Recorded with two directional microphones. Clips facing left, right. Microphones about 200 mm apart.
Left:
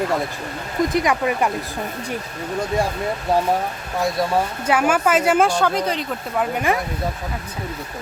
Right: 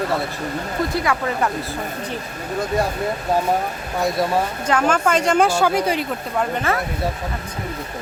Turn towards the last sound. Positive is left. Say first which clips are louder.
# left 1 dB
turn(degrees=10)  # may be behind; listen again after turning